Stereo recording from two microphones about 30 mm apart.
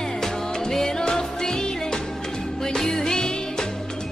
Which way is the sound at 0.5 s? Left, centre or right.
Left.